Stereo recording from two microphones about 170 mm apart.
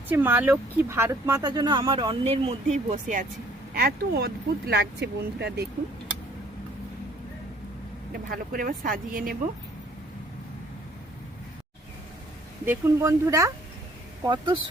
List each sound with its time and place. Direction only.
0.1 s speech: 10° right (ahead or behind); by 3.2 s 45° right (ahead or behind)
3.8 s speech: 70° right (ahead or behind)
8.1 s speech: 55° right (ahead or behind)
12.6 s speech: 15° right (ahead or behind)
14.3 s speech: 30° right (ahead or behind)